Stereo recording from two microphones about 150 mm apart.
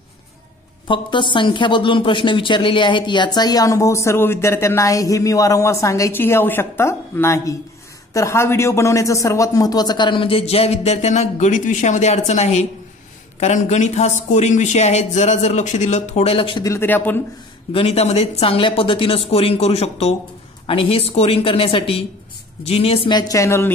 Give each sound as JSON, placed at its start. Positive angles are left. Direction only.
{"t": 0.8, "sound": "a man's voice", "side_deg": 35}
{"t": 16.6, "sound": "speech", "side_deg": 15}
{"t": 17.7, "sound": "a man's voice", "side_deg": 40}